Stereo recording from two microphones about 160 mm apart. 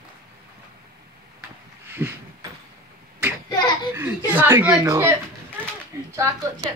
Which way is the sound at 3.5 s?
30° left (ahead or behind).